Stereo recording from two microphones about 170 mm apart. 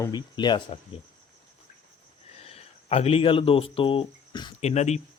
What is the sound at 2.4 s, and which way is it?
Speech, 35° left (ahead or behind).